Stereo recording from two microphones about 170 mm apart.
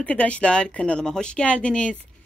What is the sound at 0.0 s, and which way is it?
A woman's voice, 10° left (ahead or behind).